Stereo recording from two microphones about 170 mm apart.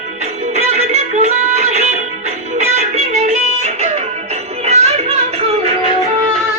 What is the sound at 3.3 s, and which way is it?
Music, 40° right (ahead or behind).